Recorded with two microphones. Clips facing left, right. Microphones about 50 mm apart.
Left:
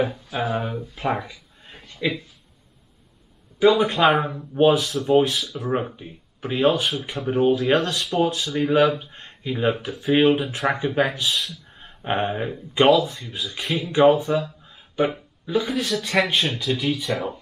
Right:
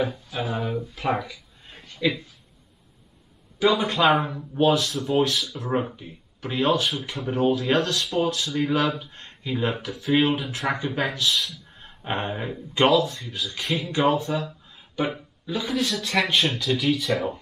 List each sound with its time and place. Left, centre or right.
0.3 s speech: left
0.7 s speech: centre
1.7 s a sound: centre
3.5 s speech: centre
4.0 s speech: left
11.3 s speech: centre
11.8 s speech: centre
13.7 s speech: centre
13.9 s speech: left
14.3 s a sound: centre
15.4 s speech: centre
17.1 s speech: centre